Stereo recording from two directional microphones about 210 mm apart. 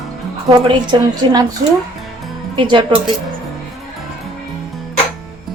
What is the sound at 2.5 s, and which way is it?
Speech, 20° right (ahead or behind).